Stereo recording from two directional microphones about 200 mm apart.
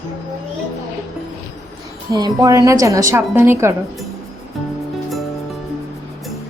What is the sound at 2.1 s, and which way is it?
A woman's voice, 20° right (ahead or behind).